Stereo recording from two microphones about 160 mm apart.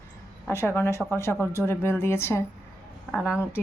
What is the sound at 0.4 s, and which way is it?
Speech, 15° left (ahead or behind).